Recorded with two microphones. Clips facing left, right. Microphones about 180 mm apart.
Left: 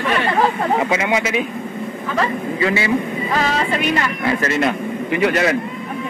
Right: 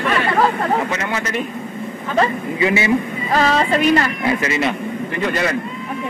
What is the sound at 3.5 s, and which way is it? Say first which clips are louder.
Music: right 4 dB; 40° right (ahead or behind).